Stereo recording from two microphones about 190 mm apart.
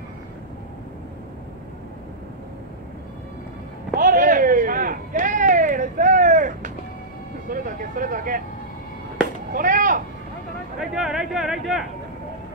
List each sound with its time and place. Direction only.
3.9 s a sound: 45° right (ahead or behind)
9.5 s chop: 45° right (ahead or behind)
10.8 s speech: 5° right (ahead or behind)